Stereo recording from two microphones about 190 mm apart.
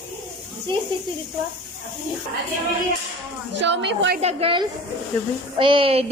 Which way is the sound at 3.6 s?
70° right (ahead or behind).